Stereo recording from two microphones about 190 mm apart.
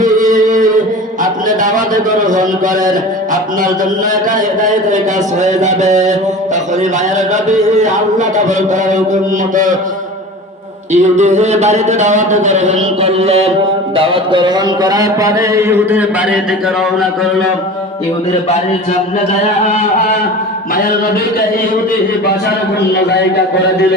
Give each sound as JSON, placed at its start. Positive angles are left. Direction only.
{"t": 0.0, "sound": "music", "side_deg": -45}
{"t": 1.2, "sound": "speech", "side_deg": -45}
{"t": 5.4, "sound": "speech", "side_deg": -40}
{"t": 7.4, "sound": "speech", "side_deg": -40}
{"t": 10.9, "sound": "speech", "side_deg": -40}